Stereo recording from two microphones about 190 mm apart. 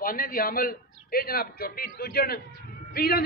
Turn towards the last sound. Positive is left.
turn(degrees=55)  # may be behind; listen again after turning